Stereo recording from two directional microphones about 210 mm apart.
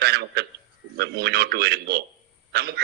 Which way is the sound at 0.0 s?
50° right (ahead or behind).